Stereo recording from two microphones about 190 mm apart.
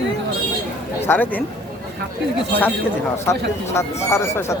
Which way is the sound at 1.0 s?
10° left (ahead or behind).